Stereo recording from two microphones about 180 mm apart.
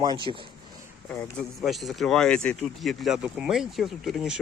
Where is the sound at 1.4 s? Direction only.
Centre (ahead or behind).